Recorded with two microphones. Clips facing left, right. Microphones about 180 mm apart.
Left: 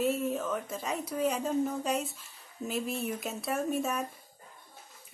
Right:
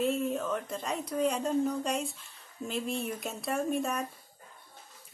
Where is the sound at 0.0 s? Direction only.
Centre (ahead or behind).